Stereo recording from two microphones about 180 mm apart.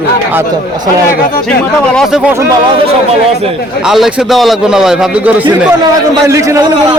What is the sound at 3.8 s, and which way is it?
A man's voice, 5° right (ahead or behind).